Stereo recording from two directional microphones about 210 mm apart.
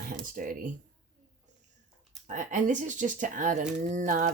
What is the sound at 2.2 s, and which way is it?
Speech, 35° right (ahead or behind).